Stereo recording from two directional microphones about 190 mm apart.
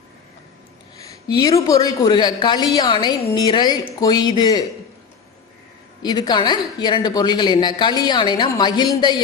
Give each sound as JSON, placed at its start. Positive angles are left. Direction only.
{"t": 1.1, "sound": "a woman's voice", "side_deg": 20}
{"t": 6.0, "sound": "a woman's voice", "side_deg": 20}